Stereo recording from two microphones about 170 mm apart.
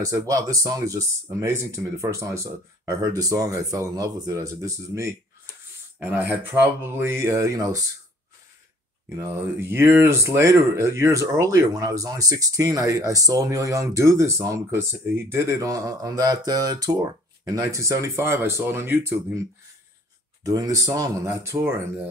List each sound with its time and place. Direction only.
0.0 s speech: 20° right (ahead or behind)
9.1 s speech: 15° right (ahead or behind)
20.4 s speech: 20° right (ahead or behind)